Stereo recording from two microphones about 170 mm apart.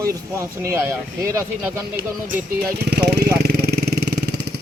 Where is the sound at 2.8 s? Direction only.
70° right (ahead or behind).